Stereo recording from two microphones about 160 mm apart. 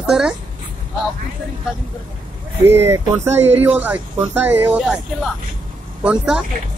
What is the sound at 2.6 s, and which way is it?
Speech, 15° right (ahead or behind).